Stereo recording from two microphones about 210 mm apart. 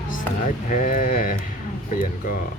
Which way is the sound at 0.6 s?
40° left (ahead or behind).